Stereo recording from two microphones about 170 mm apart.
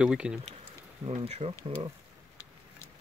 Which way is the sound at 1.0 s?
35° right (ahead or behind).